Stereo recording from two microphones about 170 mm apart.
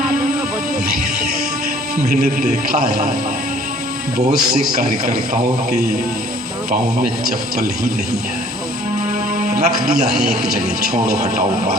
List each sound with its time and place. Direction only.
2.2 s a man's voice: 60° right (ahead or behind)
4.7 s a man's voice: 55° right (ahead or behind)
6.7 s a man's voice: 55° right (ahead or behind)
9.4 s a sound: 55° right (ahead or behind)
10.9 s a man's voice: 55° right (ahead or behind)